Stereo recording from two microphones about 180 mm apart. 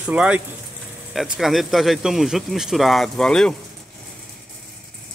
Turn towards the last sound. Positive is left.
turn(degrees=5)  # may be behind; listen again after turning